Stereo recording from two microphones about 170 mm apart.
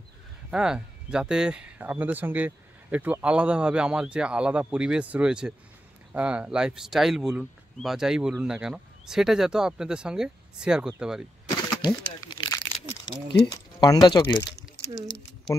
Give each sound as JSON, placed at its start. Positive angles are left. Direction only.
{"t": 0.5, "sound": "speech", "side_deg": -5}
{"t": 11.8, "sound": "crumpling", "side_deg": 25}
{"t": 13.3, "sound": "speech", "side_deg": 25}